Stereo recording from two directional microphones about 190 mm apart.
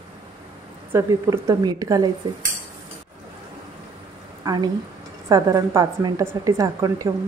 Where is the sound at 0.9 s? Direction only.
15° right (ahead or behind).